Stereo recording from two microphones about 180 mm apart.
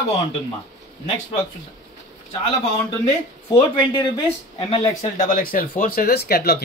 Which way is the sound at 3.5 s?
35° left (ahead or behind).